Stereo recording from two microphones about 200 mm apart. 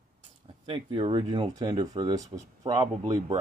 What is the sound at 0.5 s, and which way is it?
Speech, 25° right (ahead or behind).